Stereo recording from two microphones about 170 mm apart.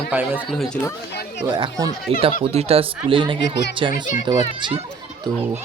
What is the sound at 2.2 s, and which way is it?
Speech, 35° right (ahead or behind).